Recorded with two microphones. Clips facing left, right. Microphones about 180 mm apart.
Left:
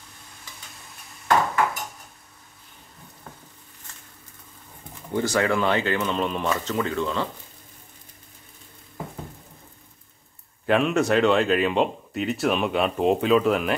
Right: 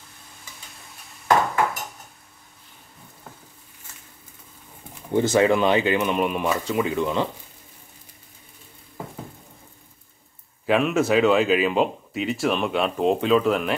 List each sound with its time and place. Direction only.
5.1 s speech: 20° right (ahead or behind)
10.6 s speech: centre (ahead or behind)